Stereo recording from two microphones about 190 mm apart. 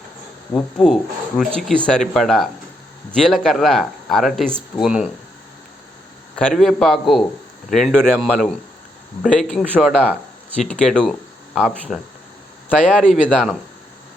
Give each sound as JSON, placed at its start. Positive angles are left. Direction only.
{"t": 0.5, "sound": "speech", "side_deg": 0}
{"t": 6.3, "sound": "speech", "side_deg": 5}